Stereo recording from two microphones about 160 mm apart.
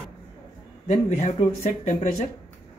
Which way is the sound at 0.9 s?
45° left (ahead or behind).